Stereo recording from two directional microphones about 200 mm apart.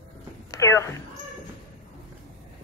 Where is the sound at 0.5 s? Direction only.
15° left (ahead or behind).